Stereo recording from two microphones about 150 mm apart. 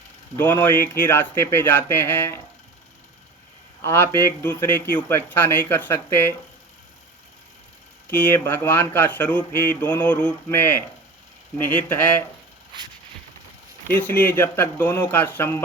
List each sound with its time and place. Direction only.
0.3 s speech: 15° left (ahead or behind)
3.8 s speech: 15° left (ahead or behind)
8.1 s speech: 10° left (ahead or behind)
12.7 s a sound: 30° right (ahead or behind)
13.8 s speech: 15° left (ahead or behind)